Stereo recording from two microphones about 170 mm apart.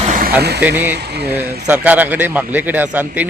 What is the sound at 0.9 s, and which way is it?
Speech, 75° right (ahead or behind).